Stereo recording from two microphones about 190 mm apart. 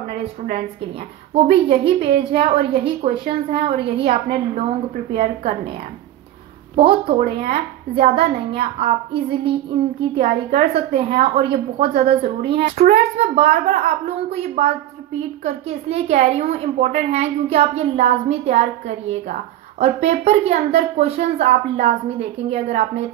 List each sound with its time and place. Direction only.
0.1 s a woman's voice: 30° right (ahead or behind)
6.7 s a woman's voice: 30° right (ahead or behind)
7.2 s speech: 50° right (ahead or behind)
7.9 s a woman's voice: 30° right (ahead or behind)